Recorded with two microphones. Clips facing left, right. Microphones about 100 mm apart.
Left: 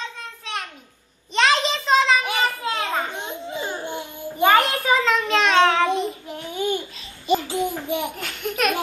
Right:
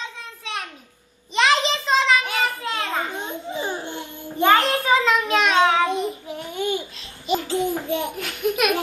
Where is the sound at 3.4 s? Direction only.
15° right (ahead or behind).